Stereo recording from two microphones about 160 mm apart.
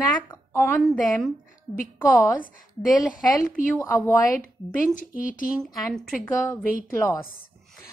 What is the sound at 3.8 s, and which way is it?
Speech, 15° left (ahead or behind).